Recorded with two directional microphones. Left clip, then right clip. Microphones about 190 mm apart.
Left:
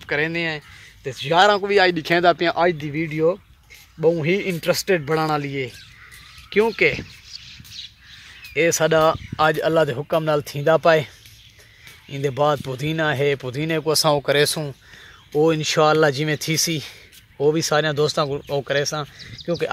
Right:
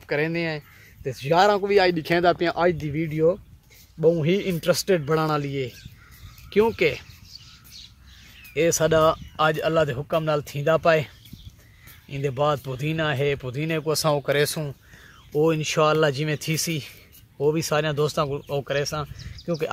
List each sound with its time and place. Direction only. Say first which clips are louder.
0.0 s speech: left 3 dB; centre (ahead or behind)
8.5 s speech: left 2 dB; 5° left (ahead or behind)
9.5 s speech: left 4 dB; 35° left (ahead or behind)
12.1 s speech: left 4 dB; 25° left (ahead or behind)